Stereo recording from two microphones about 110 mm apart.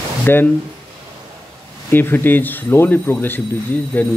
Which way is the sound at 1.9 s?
20° left (ahead or behind).